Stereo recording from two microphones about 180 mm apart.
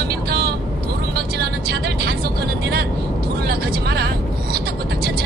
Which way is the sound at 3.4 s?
65° right (ahead or behind).